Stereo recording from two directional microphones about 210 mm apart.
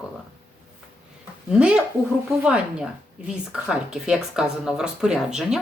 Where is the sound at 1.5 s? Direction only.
5° right (ahead or behind).